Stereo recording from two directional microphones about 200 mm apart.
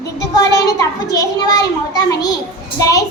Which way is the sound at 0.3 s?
20° left (ahead or behind).